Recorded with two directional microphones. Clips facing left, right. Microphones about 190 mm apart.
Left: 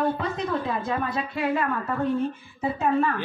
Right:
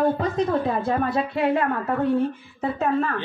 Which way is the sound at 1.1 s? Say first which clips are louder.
Right 4 dB; 60° right (ahead or behind).